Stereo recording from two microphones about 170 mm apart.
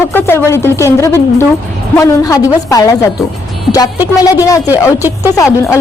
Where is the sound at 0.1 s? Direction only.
10° left (ahead or behind).